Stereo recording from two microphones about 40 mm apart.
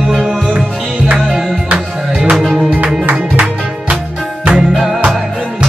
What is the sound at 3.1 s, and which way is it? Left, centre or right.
Music, right.